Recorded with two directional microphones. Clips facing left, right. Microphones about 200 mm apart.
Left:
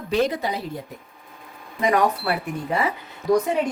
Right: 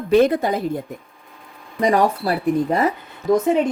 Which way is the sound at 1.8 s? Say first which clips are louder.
Right 3 dB; 35° right (ahead or behind).